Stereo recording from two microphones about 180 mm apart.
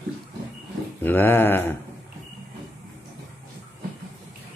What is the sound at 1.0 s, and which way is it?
Speech, 10° left (ahead or behind).